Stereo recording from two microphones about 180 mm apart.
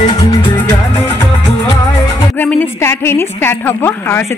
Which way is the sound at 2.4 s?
10° left (ahead or behind).